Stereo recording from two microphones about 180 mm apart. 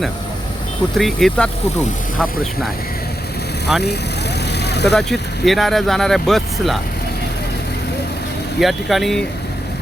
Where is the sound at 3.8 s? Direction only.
65° left (ahead or behind).